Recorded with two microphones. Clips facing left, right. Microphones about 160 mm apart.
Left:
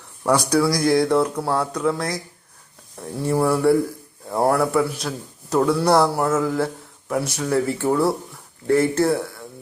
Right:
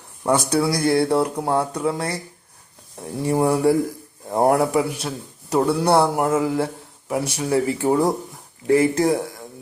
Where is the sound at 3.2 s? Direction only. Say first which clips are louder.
Even; 15° right (ahead or behind).